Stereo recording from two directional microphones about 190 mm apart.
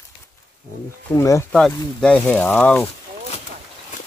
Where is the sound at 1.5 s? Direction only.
5° left (ahead or behind).